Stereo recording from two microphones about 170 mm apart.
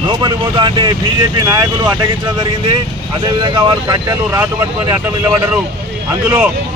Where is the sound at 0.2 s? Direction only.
25° right (ahead or behind).